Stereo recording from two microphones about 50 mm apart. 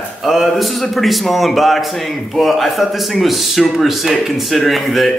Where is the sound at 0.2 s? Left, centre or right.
Centre.